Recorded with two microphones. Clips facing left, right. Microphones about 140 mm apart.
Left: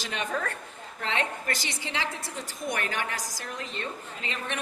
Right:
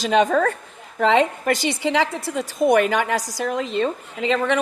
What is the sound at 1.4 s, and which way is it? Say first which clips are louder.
A woman's voice: right 13 dB; 85° right.